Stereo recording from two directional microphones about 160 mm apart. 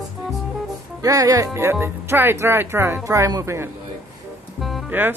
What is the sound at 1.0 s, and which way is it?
Speech, 20° right (ahead or behind).